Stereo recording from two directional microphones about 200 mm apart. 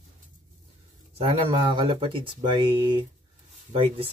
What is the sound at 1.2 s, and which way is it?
Speech, 25° right (ahead or behind).